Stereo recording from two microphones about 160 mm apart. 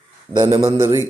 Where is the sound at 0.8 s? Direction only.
15° right (ahead or behind).